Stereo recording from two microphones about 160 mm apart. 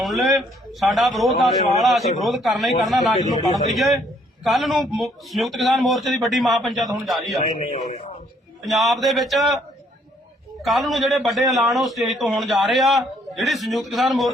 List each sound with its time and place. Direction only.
0.0 s a man's voice: centre (ahead or behind)
3.2 s a man's voice: 50° left (ahead or behind)
3.8 s a man's voice: centre (ahead or behind)
7.4 s a man's voice: 50° left (ahead or behind)
8.6 s a man's voice: centre (ahead or behind)
10.6 s a man's voice: centre (ahead or behind)